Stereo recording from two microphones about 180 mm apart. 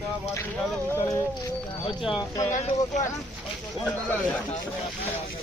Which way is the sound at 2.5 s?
40° left (ahead or behind).